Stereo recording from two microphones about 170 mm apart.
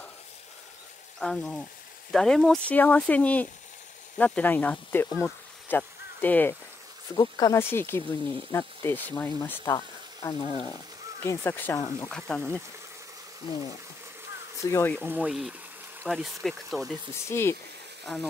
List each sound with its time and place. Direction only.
1.2 s speech: 5° left (ahead or behind)
7.2 s speech: 20° left (ahead or behind)
10.4 s speech: 40° left (ahead or behind)
11.2 s speech: 10° left (ahead or behind)
12.1 s speech: 5° left (ahead or behind)
14.7 s speech: 15° left (ahead or behind)
15.0 s speech: 10° right (ahead or behind)
17.1 s speech: 15° left (ahead or behind)
18.0 s speech: centre (ahead or behind)